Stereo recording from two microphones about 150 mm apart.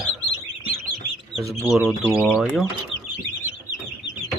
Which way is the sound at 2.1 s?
5° right (ahead or behind).